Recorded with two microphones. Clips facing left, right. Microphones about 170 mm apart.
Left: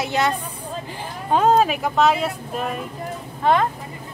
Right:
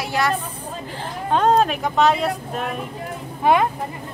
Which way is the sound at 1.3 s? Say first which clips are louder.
Left 1 dB; 5° left (ahead or behind).